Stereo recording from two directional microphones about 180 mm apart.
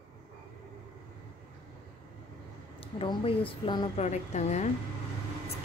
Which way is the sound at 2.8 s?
30° left (ahead or behind).